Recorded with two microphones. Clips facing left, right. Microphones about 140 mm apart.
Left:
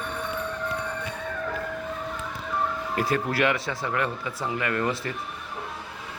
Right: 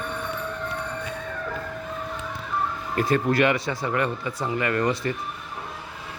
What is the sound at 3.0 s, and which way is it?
Speech, 5° left (ahead or behind).